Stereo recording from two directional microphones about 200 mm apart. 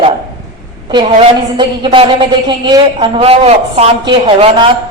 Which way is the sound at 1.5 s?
25° right (ahead or behind).